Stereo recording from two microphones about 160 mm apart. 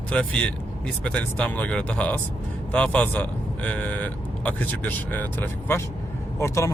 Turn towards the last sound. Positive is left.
turn(degrees=15)  # may be behind; listen again after turning